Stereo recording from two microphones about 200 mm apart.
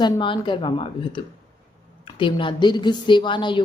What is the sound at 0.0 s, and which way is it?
A woman's voice, 25° left (ahead or behind).